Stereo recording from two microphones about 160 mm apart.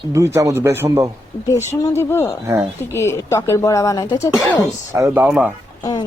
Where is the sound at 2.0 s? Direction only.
15° left (ahead or behind).